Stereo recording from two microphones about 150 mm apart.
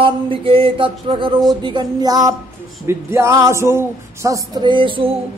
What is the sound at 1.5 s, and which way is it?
Speech, 30° right (ahead or behind).